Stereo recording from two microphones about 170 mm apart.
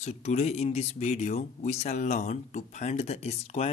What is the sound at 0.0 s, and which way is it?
Speech, 40° left (ahead or behind).